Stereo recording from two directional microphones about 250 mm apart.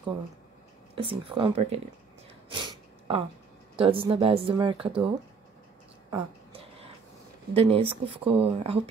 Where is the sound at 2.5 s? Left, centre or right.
Right.